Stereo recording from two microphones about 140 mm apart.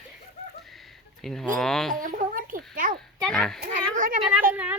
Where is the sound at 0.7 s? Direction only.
Centre (ahead or behind).